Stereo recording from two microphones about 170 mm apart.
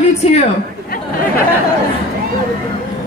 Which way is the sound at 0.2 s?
40° left (ahead or behind).